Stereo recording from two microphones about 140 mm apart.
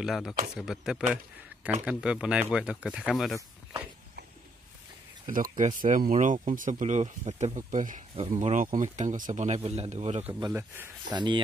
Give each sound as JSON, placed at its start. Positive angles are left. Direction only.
{"t": 0.0, "sound": "speech", "side_deg": 0}
{"t": 5.2, "sound": "speech", "side_deg": -70}
{"t": 8.2, "sound": "speech", "side_deg": -50}
{"t": 10.5, "sound": "speech", "side_deg": -15}
{"t": 11.1, "sound": "speech", "side_deg": -35}